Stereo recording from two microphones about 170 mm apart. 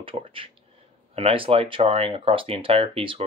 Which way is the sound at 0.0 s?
30° right (ahead or behind).